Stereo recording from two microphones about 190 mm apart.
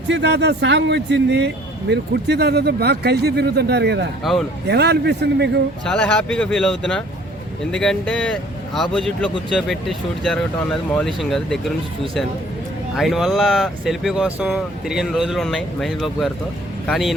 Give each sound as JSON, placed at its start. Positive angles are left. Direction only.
{"t": 0.1, "sound": "speech", "side_deg": -65}
{"t": 4.2, "sound": "speech", "side_deg": 0}
{"t": 4.7, "sound": "speech", "side_deg": -60}
{"t": 5.8, "sound": "speech", "side_deg": 5}
{"t": 13.0, "sound": "speech", "side_deg": 0}